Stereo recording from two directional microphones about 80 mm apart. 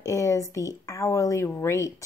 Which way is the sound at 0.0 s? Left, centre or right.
Left.